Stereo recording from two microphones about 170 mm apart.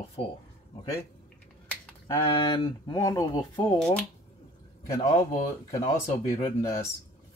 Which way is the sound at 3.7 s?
5° left (ahead or behind).